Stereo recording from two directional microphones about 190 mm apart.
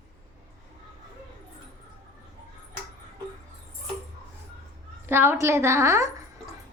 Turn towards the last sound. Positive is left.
turn(degrees=-15)  # may be behind; listen again after turning